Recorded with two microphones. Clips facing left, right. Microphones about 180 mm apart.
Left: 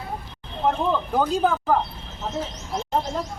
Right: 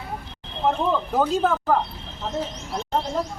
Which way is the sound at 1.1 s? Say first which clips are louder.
Even; centre (ahead or behind).